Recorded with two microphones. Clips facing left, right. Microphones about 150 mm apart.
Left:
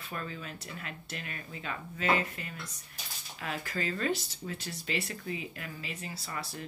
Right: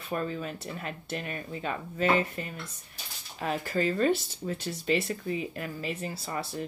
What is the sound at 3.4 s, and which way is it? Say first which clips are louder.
Speech: right 7 dB; 35° right (ahead or behind).